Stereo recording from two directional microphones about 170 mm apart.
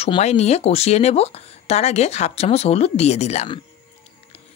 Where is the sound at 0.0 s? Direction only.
40° left (ahead or behind).